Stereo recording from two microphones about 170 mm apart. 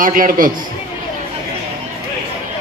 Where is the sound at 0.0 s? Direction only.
55° right (ahead or behind).